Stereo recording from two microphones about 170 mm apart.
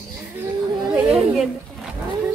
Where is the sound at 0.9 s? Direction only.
5° right (ahead or behind).